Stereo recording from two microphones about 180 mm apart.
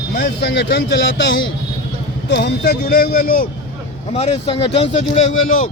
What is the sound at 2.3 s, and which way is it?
Speech, 65° left (ahead or behind).